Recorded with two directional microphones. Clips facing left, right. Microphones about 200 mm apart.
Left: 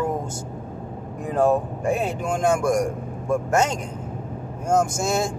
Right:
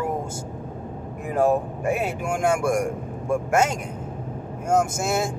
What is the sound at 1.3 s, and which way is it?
Speech, 5° right (ahead or behind).